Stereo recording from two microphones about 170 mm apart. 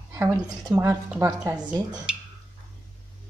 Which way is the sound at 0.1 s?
15° right (ahead or behind).